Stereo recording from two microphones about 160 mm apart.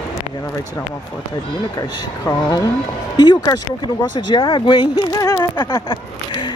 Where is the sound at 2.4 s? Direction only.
25° left (ahead or behind).